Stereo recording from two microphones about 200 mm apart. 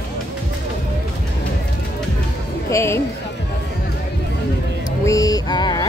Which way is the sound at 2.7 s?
15° left (ahead or behind).